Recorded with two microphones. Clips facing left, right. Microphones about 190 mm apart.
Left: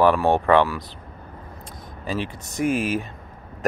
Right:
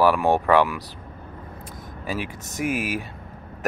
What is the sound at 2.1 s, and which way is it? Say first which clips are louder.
Speech: left 2 dB; 15° right (ahead or behind).